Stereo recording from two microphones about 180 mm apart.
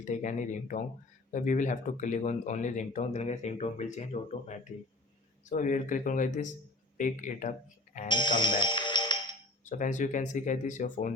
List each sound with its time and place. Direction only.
0.0 s speech: 40° left (ahead or behind)
8.0 s speech: 25° left (ahead or behind)
9.6 s speech: 45° left (ahead or behind)